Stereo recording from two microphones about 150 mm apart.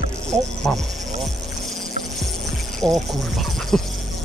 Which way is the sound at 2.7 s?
Centre (ahead or behind).